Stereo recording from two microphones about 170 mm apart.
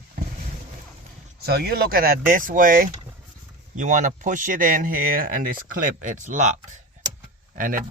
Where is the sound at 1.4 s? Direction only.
65° right (ahead or behind).